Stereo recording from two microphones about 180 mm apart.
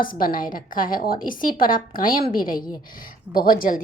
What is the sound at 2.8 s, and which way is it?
Speech, 50° left (ahead or behind).